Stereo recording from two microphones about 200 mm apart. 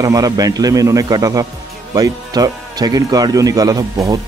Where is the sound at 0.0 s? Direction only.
15° right (ahead or behind).